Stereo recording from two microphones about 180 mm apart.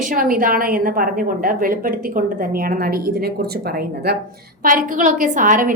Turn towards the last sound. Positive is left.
turn(degrees=-50)  # may be behind; listen again after turning